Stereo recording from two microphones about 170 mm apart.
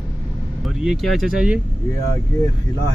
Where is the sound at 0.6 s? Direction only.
Centre (ahead or behind).